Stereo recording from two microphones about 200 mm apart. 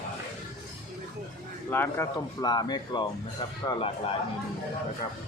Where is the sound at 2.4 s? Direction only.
20° left (ahead or behind).